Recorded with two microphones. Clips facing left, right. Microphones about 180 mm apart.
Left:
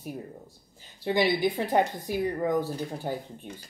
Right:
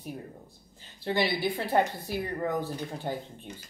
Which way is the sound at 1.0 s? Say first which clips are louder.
Left 4 dB; 15° left (ahead or behind).